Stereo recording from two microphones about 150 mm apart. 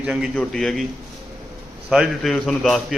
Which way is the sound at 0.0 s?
5° right (ahead or behind).